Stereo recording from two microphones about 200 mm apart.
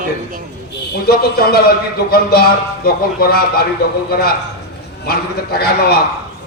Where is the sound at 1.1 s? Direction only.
50° left (ahead or behind).